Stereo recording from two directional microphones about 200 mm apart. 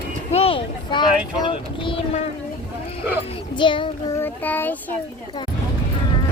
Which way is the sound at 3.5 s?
25° left (ahead or behind).